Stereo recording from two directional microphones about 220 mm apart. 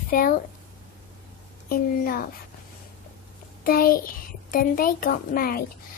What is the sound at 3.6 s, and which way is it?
A child's voice, 40° left (ahead or behind).